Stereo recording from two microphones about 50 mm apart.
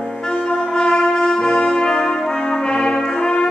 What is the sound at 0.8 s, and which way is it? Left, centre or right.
Brass instrument, centre.